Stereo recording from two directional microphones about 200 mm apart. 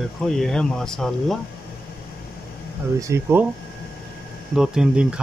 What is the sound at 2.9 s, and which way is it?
Speech, 15° right (ahead or behind).